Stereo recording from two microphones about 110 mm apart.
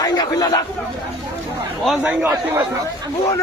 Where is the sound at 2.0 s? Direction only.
10° right (ahead or behind).